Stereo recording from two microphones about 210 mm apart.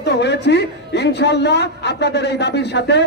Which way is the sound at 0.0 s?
55° left (ahead or behind).